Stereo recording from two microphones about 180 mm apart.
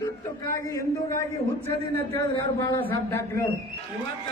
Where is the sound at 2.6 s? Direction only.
20° left (ahead or behind).